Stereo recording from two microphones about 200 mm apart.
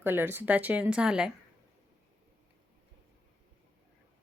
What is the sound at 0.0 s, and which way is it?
Speech, 10° right (ahead or behind).